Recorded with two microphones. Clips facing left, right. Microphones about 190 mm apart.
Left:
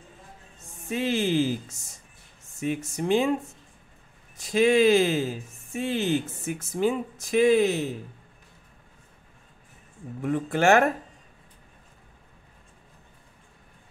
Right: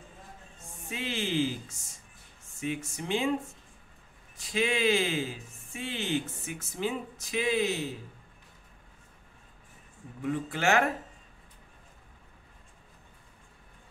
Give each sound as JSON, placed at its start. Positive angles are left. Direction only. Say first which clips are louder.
{"t": 0.8, "sound": "speech", "louder": "left 8 dB", "side_deg": 45}
{"t": 2.6, "sound": "speech", "louder": "left 6 dB", "side_deg": 45}
{"t": 4.4, "sound": "speech", "louder": "left 9 dB", "side_deg": 45}
{"t": 10.2, "sound": "speech", "louder": "left 6 dB", "side_deg": 50}